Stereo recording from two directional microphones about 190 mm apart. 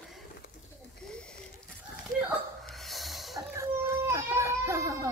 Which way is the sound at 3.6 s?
15° right (ahead or behind).